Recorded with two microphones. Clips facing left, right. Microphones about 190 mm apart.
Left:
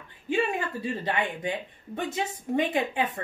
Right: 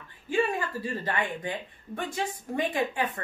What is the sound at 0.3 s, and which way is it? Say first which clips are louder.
A woman's voice: even; 20° left (ahead or behind).